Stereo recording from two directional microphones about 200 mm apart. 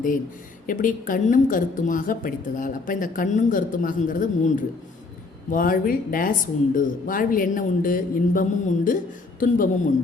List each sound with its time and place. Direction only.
0.7 s a woman's voice: 40° left (ahead or behind)